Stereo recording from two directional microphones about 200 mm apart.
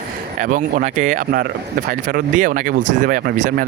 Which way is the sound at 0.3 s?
40° right (ahead or behind).